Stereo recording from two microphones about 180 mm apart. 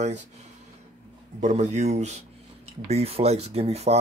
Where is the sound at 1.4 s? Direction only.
40° right (ahead or behind).